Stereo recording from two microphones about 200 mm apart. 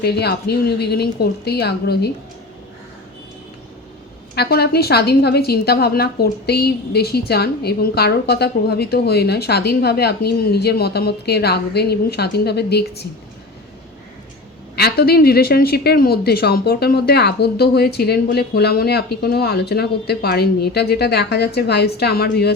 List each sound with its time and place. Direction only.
0.0 s a woman's voice: 55° left (ahead or behind)
4.4 s a woman's voice: 50° left (ahead or behind)
14.8 s a woman's voice: 50° left (ahead or behind)